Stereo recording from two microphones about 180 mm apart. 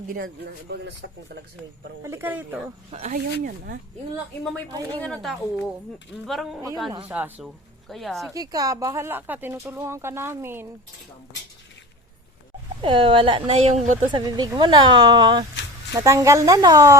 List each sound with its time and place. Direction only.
0.7 s speech: 60° right (ahead or behind)
2.0 s speech: 10° right (ahead or behind)
2.9 s speech: 40° right (ahead or behind)
4.9 s speech: 5° left (ahead or behind)
8.3 s speech: 20° right (ahead or behind)
12.8 s speech: 30° right (ahead or behind)
14.1 s speech: 25° right (ahead or behind)